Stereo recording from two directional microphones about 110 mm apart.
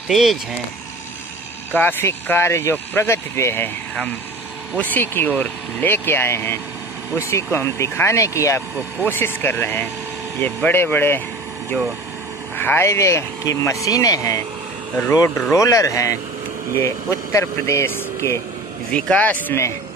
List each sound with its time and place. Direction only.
0.1 s speech: centre (ahead or behind)
1.7 s speech: 15° left (ahead or behind)
4.7 s speech: 15° left (ahead or behind)
12.5 s speech: 20° left (ahead or behind)
18.9 s speech: 10° left (ahead or behind)